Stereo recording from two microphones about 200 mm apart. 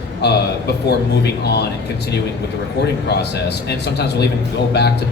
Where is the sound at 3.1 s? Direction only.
55° left (ahead or behind).